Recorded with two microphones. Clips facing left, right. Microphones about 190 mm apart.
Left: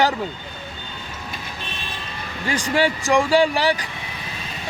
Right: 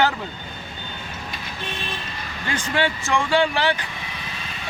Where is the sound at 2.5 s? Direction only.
10° left (ahead or behind).